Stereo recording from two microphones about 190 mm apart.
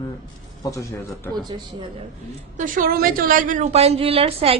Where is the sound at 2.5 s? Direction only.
45° right (ahead or behind).